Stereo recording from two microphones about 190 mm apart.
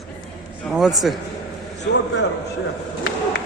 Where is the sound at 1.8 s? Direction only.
70° left (ahead or behind).